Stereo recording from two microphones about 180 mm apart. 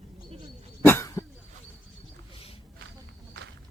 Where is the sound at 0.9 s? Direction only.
15° left (ahead or behind).